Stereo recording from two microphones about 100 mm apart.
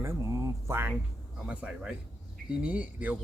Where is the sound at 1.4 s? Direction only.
10° right (ahead or behind).